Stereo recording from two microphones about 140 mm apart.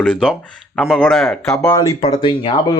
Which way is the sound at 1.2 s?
15° left (ahead or behind).